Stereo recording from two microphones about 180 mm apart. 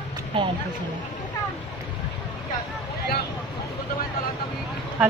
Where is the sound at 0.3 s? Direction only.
30° right (ahead or behind).